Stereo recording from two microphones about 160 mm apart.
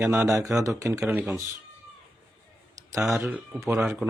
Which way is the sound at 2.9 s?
Centre (ahead or behind).